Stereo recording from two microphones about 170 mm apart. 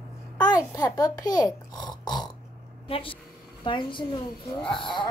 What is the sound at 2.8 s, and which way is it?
A woman's voice, 35° left (ahead or behind).